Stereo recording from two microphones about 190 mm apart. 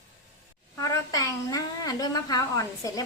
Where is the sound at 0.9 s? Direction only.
20° left (ahead or behind).